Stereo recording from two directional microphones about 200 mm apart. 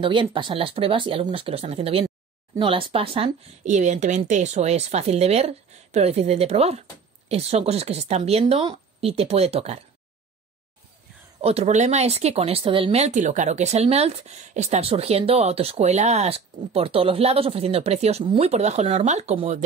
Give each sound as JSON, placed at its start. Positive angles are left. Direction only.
{"t": 0.0, "sound": "speech", "side_deg": -25}
{"t": 11.4, "sound": "speech", "side_deg": -30}